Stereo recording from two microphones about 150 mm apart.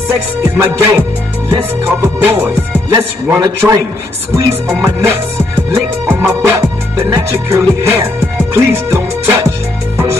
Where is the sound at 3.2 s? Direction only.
20° right (ahead or behind).